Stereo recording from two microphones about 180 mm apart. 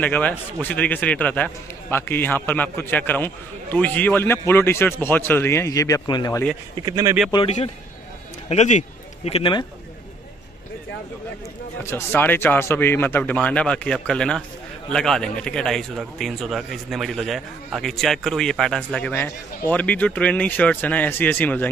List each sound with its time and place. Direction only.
0.0 s a man's voice: 10° left (ahead or behind)
6.8 s speech: 20° right (ahead or behind)
8.5 s a man's voice: 40° left (ahead or behind)
11.8 s a man's voice: 10° left (ahead or behind)